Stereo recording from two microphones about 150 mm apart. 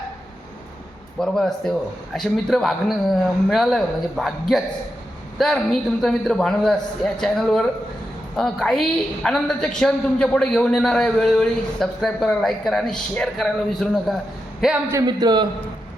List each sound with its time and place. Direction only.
1.2 s a woman's voice: 5° left (ahead or behind)
14.8 s speech: 25° right (ahead or behind)